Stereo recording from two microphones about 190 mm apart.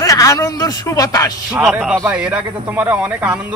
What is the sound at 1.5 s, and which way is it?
A man's voice, 5° right (ahead or behind).